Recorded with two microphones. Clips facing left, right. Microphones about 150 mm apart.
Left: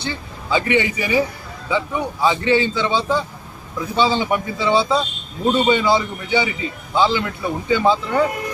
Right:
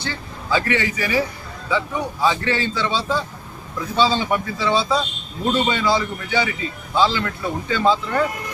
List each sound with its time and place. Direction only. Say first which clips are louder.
0.0 s a man's voice: left 2 dB; 20° left (ahead or behind)